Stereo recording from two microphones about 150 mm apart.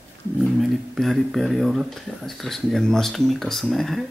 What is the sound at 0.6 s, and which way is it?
Speech, centre (ahead or behind).